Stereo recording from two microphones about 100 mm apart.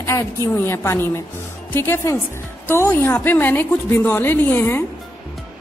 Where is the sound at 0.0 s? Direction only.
30° left (ahead or behind).